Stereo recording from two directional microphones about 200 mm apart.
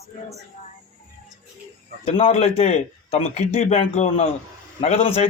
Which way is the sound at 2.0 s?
30° left (ahead or behind).